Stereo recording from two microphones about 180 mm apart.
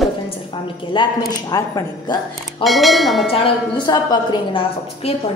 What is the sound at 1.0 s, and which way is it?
A woman's voice, 25° left (ahead or behind).